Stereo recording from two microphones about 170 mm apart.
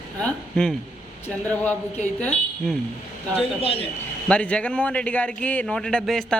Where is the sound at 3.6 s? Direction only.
35° left (ahead or behind).